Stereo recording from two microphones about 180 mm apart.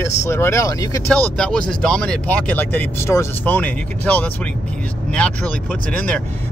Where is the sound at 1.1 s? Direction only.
5° left (ahead or behind).